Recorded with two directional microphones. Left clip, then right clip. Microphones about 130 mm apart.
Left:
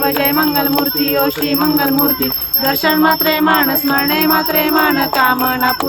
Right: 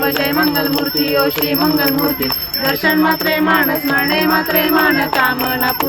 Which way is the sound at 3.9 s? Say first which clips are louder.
Even; 25° left (ahead or behind).